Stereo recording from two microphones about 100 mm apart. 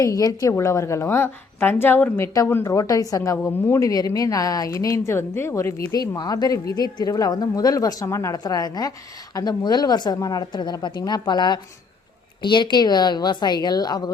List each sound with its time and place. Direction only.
0.0 s a woman's voice: 35° left (ahead or behind)
2.7 s a woman's voice: 35° left (ahead or behind)
5.9 s a woman's voice: 40° left (ahead or behind)